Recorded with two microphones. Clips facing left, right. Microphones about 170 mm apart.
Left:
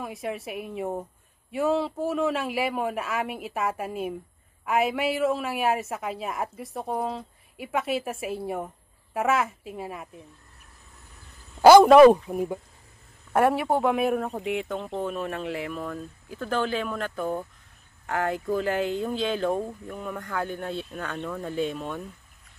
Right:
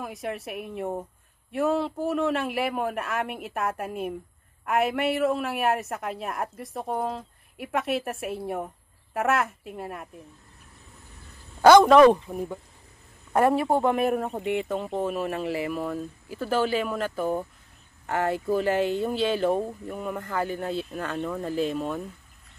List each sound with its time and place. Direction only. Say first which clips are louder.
0.0 s a woman's voice: even; centre (ahead or behind)
11.6 s a woman's voice: left 2 dB; 10° left (ahead or behind)